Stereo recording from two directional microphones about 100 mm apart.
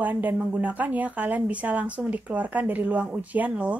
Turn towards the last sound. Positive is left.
turn(degrees=-15)  # may be behind; listen again after turning